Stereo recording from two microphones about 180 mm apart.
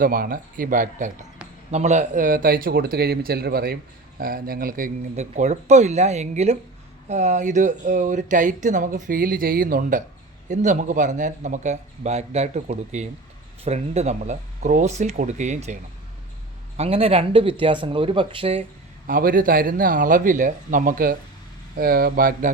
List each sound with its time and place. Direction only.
0.0 s speech: 50° right (ahead or behind); by 18.6 s 30° right (ahead or behind)
19.0 s speech: 50° right (ahead or behind)